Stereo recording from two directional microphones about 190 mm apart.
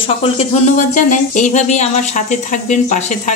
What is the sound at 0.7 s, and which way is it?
A woman's voice, 40° left (ahead or behind).